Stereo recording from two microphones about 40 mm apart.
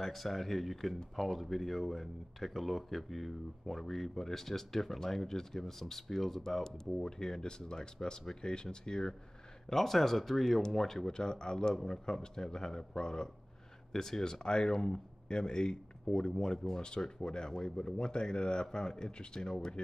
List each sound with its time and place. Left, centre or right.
0.0 s speech: centre